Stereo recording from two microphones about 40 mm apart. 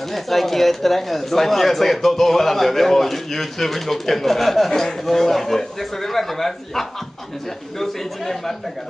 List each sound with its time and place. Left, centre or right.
0.1 s a man's voice: centre